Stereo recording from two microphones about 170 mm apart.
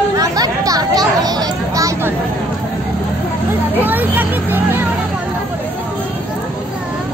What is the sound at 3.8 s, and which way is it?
Speech, 10° right (ahead or behind).